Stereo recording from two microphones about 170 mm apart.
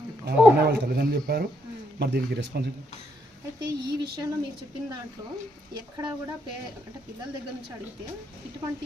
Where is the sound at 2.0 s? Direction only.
75° right (ahead or behind).